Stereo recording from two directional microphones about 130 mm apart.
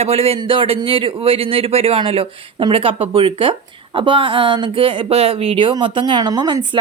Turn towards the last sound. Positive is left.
turn(degrees=-35)  # may be behind; listen again after turning